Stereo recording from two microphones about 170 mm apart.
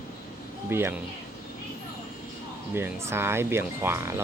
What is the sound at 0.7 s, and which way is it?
Speech, 15° right (ahead or behind).